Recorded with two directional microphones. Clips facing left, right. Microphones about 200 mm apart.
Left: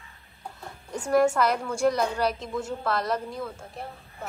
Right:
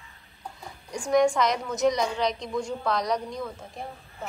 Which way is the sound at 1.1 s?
5° left (ahead or behind).